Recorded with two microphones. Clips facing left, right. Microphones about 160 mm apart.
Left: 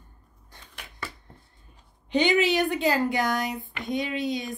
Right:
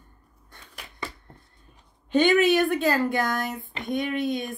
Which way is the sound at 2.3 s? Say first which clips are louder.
Right 3 dB; 50° right (ahead or behind).